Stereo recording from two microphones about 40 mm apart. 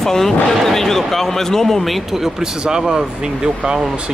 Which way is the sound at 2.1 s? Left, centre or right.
Centre.